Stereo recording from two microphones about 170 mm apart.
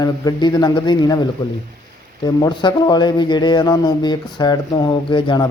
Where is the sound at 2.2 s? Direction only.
25° left (ahead or behind).